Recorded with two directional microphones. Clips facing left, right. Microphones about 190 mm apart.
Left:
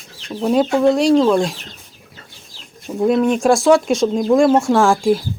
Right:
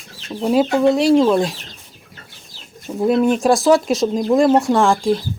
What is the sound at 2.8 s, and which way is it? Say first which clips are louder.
Speech: even; 5° right (ahead or behind).